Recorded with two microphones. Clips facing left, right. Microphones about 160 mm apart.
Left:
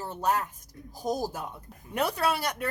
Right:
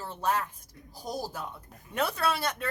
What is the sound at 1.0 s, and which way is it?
Speech, 50° left (ahead or behind).